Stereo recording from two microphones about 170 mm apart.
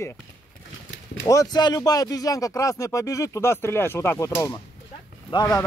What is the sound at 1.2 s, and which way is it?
Speech, 20° left (ahead or behind).